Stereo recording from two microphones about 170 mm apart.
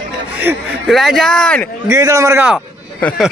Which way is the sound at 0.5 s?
10° right (ahead or behind).